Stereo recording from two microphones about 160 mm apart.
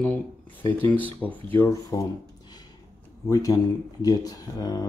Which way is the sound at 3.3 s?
20° left (ahead or behind).